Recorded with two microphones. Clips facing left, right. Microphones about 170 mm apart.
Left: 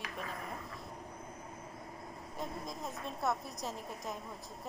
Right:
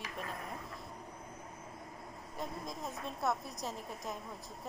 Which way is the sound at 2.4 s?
Centre (ahead or behind).